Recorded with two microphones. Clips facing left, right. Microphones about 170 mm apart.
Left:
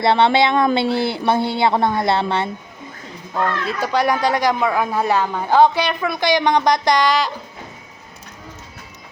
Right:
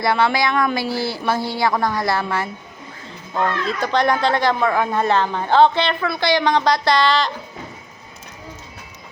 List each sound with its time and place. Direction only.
0.0 s speech: 25° left (ahead or behind)
3.3 s speech: 5° left (ahead or behind)